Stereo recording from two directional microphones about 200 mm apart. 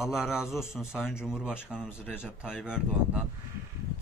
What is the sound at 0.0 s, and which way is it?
Speech, centre (ahead or behind).